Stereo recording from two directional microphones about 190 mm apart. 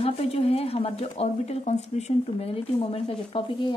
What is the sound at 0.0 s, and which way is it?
Speech, 30° left (ahead or behind).